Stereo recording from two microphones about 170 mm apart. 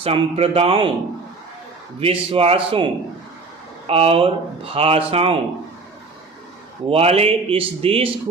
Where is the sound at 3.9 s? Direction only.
35° right (ahead or behind).